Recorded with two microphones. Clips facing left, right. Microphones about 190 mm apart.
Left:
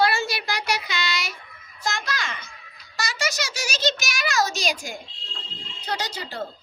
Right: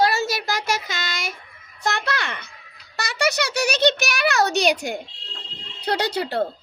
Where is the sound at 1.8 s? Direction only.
60° right (ahead or behind).